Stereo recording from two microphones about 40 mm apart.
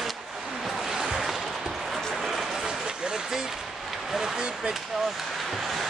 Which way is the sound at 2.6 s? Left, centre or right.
Centre.